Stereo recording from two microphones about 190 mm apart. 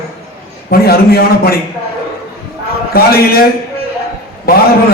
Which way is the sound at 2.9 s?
55° left (ahead or behind).